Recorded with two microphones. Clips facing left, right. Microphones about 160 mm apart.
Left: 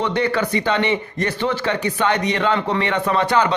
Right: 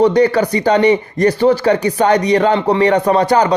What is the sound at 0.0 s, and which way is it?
Speech, 40° right (ahead or behind).